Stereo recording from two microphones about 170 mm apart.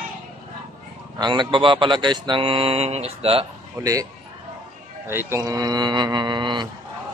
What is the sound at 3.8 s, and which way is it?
Mantra, 15° right (ahead or behind).